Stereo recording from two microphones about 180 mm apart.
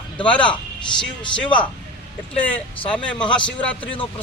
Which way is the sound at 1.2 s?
25° left (ahead or behind).